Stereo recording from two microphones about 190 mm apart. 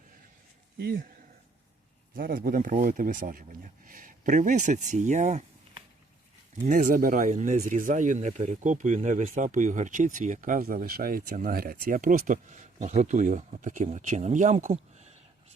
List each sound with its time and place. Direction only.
0.8 s speech: 55° right (ahead or behind)
2.1 s speech: 50° right (ahead or behind)
6.7 s speech: 45° right (ahead or behind)